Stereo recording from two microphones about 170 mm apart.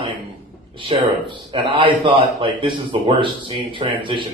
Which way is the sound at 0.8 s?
30° right (ahead or behind).